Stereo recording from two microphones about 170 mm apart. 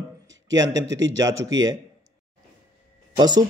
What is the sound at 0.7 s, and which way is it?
Speech, 90° right.